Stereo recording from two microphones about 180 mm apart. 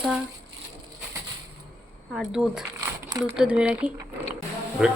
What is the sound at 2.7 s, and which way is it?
Crumpling, 20° right (ahead or behind).